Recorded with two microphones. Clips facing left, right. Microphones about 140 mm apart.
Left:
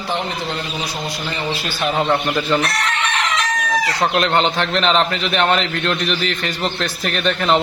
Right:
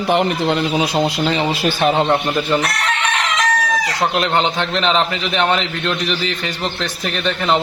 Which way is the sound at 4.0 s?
Centre (ahead or behind).